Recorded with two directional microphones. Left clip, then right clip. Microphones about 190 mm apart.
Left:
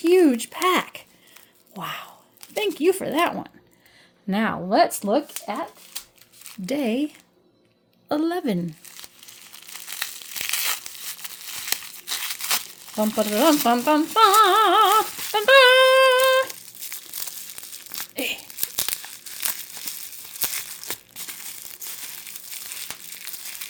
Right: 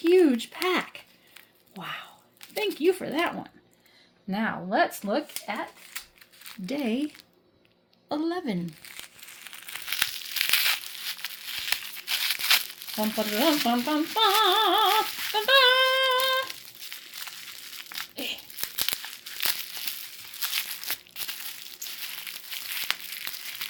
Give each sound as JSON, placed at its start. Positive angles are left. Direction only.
{"t": 0.0, "sound": "speech", "side_deg": 35}
{"t": 4.3, "sound": "speech", "side_deg": 65}
{"t": 6.7, "sound": "speech", "side_deg": 35}
{"t": 8.1, "sound": "speech", "side_deg": 55}
{"t": 9.7, "sound": "crumpling", "side_deg": 15}
{"t": 14.1, "sound": "a sound", "side_deg": 40}
{"t": 16.8, "sound": "crumpling", "side_deg": 35}